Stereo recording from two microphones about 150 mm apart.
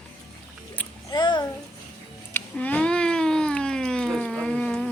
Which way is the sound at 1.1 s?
30° left (ahead or behind).